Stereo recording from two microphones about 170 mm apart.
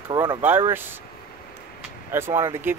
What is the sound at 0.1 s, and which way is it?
Speech, 25° right (ahead or behind).